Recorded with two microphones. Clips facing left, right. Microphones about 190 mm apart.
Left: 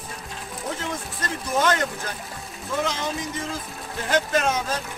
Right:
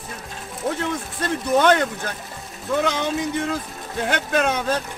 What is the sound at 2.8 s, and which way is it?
Speech, 65° right (ahead or behind).